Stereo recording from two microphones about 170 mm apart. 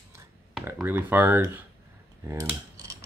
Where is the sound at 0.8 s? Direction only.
10° right (ahead or behind).